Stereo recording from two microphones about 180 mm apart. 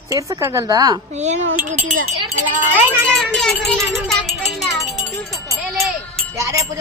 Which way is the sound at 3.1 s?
Centre (ahead or behind).